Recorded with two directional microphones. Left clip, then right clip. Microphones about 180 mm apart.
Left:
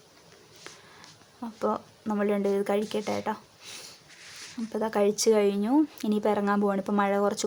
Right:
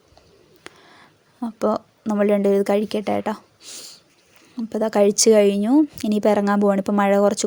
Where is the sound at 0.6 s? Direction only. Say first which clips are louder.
Right 4 dB; 30° right (ahead or behind).